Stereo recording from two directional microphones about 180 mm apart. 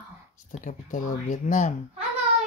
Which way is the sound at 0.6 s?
45° left (ahead or behind).